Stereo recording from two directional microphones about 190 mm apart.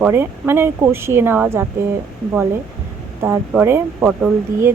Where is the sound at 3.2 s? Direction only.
15° right (ahead or behind).